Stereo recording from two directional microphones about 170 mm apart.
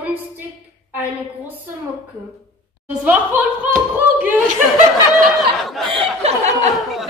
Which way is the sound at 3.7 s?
10° right (ahead or behind).